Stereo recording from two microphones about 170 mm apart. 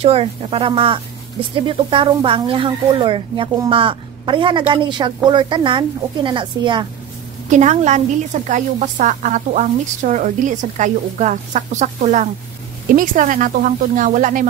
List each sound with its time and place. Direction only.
0.0 s speech: 35° right (ahead or behind)
7.4 s a woman's voice: 45° right (ahead or behind)